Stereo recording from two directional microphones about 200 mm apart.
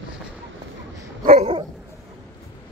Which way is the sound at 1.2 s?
30° right (ahead or behind).